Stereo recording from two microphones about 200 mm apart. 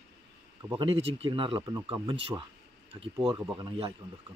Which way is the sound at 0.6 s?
25° right (ahead or behind).